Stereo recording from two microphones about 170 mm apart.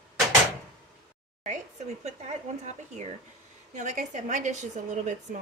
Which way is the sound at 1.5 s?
45° right (ahead or behind).